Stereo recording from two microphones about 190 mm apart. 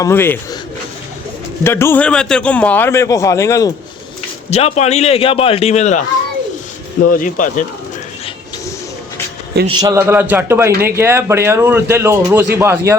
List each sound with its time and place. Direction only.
0.0 s a man's voice: 10° left (ahead or behind)
1.6 s a man's voice: 10° left (ahead or behind)
4.5 s a man's voice: 35° left (ahead or behind)
7.1 s speech: 45° left (ahead or behind)
9.6 s speech: 20° right (ahead or behind)